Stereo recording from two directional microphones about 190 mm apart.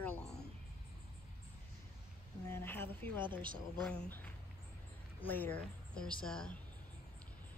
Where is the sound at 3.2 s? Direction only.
25° right (ahead or behind).